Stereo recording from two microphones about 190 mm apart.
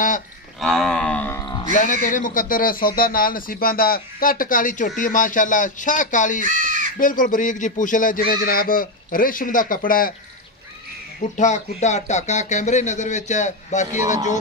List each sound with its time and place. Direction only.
0.6 s livestock: centre (ahead or behind)
1.4 s music: 20° left (ahead or behind)
1.7 s speech: 45° left (ahead or behind)
6.4 s crow: 45° right (ahead or behind)
7.0 s speech: 45° left (ahead or behind)
11.1 s speech: 40° left (ahead or behind)